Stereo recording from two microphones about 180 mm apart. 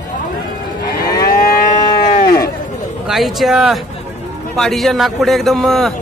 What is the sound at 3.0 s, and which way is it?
Speech, centre (ahead or behind).